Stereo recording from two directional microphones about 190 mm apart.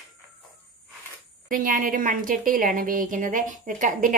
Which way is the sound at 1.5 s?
45° right (ahead or behind).